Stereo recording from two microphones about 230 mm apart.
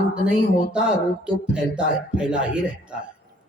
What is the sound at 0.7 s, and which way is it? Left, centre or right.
A man's voice, centre.